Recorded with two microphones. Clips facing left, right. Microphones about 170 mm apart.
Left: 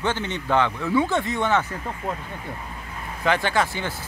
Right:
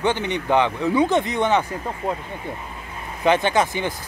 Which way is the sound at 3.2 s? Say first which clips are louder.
Right 4 dB; 20° right (ahead or behind).